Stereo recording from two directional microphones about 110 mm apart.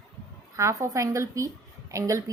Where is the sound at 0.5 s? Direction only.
30° right (ahead or behind).